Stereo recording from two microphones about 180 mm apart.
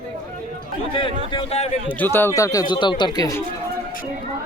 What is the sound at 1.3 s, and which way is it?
Speech, 30° left (ahead or behind).